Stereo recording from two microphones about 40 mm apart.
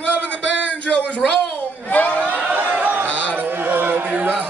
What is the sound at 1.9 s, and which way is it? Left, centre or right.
Speech, left.